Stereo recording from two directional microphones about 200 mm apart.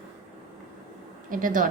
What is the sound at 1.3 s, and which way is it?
Speech, 40° right (ahead or behind).